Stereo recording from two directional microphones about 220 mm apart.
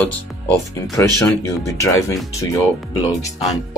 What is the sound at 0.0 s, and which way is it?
Speech, 5° left (ahead or behind).